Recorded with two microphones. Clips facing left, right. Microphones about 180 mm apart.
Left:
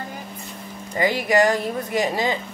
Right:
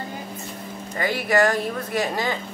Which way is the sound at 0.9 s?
15° left (ahead or behind).